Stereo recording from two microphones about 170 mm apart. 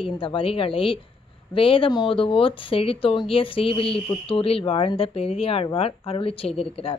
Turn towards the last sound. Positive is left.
turn(degrees=35)  # may be behind; listen again after turning